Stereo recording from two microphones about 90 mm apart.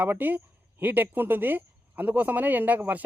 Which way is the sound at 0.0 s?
20° right (ahead or behind).